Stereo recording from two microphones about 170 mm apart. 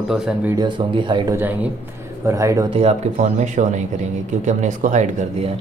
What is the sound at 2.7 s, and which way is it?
Speech, 40° right (ahead or behind).